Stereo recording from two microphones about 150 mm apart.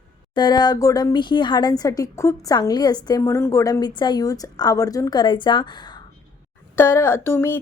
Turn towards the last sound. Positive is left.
turn(degrees=15)  # may be behind; listen again after turning